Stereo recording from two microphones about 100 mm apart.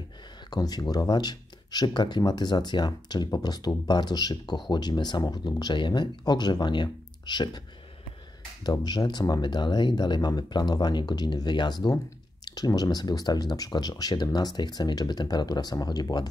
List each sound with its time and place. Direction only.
0.5 s speech: 40° left (ahead or behind)
8.6 s speech: 45° left (ahead or behind)